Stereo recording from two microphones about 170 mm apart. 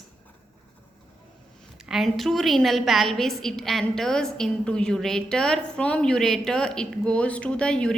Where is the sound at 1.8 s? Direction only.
Centre (ahead or behind).